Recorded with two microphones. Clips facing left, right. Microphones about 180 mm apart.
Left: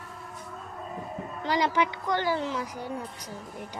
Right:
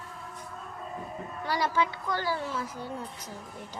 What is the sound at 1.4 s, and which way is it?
A child's voice, 20° left (ahead or behind).